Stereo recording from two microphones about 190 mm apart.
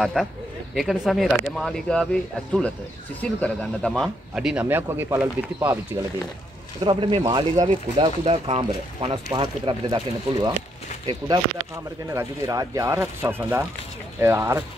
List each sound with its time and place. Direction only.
0.0 s speech: centre (ahead or behind)
3.2 s speech: 5° left (ahead or behind); by 5.8 s 10° right (ahead or behind)
6.8 s speech: 25° right (ahead or behind)